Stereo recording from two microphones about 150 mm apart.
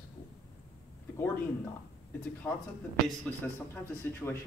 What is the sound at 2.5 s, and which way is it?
Speech, centre (ahead or behind).